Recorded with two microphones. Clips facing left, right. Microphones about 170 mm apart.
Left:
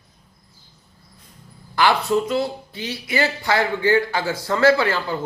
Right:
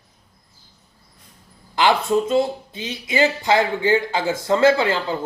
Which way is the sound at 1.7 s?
20° right (ahead or behind).